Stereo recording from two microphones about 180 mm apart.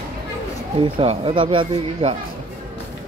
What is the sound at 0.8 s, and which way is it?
Speech, 30° right (ahead or behind).